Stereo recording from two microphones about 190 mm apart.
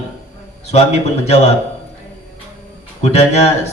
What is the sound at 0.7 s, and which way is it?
Speech, 35° left (ahead or behind).